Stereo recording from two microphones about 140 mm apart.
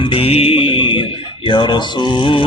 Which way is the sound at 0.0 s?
40° left (ahead or behind).